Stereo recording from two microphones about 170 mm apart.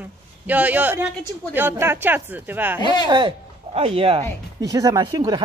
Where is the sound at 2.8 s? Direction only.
25° left (ahead or behind).